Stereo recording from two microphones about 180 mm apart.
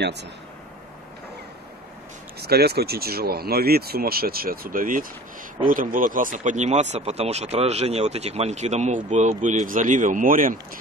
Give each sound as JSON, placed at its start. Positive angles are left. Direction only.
{"t": 2.4, "sound": "speech", "side_deg": -60}